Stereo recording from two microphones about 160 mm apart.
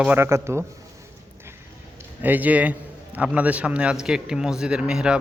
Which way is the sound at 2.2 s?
10° right (ahead or behind).